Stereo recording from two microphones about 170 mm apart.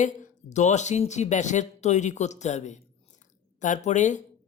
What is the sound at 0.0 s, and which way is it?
Speech, 45° left (ahead or behind).